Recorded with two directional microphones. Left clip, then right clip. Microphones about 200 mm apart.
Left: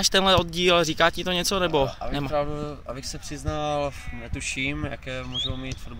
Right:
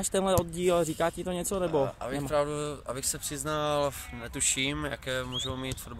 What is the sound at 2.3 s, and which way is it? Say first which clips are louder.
Speech: even; 25° right (ahead or behind).